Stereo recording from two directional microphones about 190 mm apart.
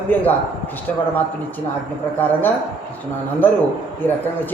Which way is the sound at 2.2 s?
10° left (ahead or behind).